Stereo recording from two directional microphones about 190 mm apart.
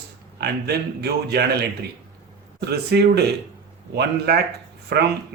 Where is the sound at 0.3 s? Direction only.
60° right (ahead or behind).